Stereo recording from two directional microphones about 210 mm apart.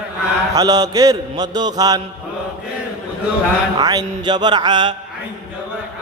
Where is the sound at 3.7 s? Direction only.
20° right (ahead or behind).